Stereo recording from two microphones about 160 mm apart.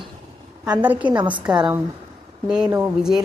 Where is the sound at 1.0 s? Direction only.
30° right (ahead or behind).